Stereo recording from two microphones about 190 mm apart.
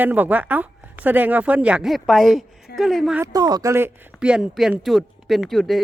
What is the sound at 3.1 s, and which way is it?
Speech, 20° right (ahead or behind).